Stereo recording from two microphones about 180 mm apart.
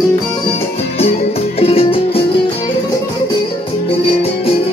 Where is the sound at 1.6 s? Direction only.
30° left (ahead or behind).